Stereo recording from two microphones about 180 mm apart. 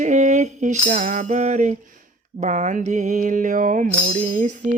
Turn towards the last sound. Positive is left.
turn(degrees=-45)  # may be behind; listen again after turning